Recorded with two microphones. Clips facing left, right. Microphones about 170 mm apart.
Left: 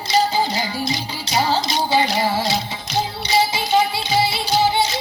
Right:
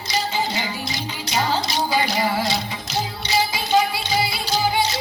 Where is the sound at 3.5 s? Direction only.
25° left (ahead or behind).